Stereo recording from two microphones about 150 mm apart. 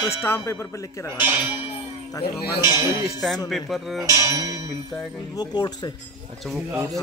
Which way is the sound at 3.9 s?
20° right (ahead or behind).